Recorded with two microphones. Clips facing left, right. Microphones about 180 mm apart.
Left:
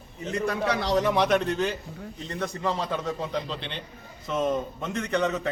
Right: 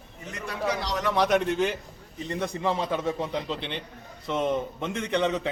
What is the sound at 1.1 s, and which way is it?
A man's voice, centre (ahead or behind).